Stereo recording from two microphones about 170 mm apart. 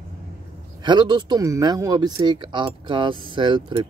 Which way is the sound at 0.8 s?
25° right (ahead or behind).